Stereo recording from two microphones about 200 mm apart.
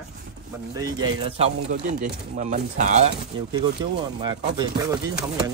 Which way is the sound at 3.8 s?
20° right (ahead or behind).